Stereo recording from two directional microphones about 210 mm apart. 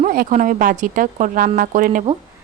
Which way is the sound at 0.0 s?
40° right (ahead or behind).